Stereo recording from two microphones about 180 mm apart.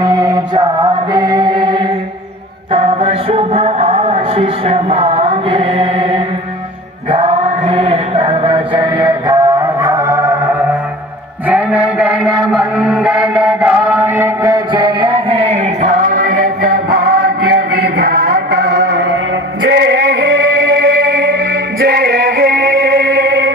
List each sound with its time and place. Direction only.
0.0 s chant: 20° right (ahead or behind)
2.7 s music: 30° right (ahead or behind)
7.1 s chant: 35° right (ahead or behind); by 10.8 s 15° right (ahead or behind)
11.4 s mantra: 10° right (ahead or behind); by 16.2 s 40° right (ahead or behind)
16.7 s music: 60° right (ahead or behind); by 19.0 s 75° right (ahead or behind)
19.7 s music: 85° right